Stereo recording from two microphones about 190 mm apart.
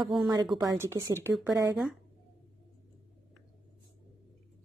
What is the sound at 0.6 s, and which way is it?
Speech, 15° right (ahead or behind).